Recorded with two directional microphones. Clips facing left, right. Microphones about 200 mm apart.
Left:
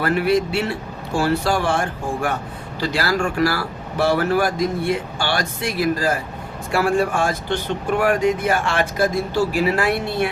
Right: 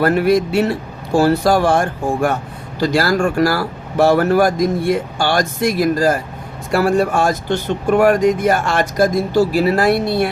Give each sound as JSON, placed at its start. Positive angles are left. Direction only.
{"t": 0.0, "sound": "speech", "side_deg": -45}